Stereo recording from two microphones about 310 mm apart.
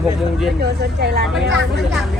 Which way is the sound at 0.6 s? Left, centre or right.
Right.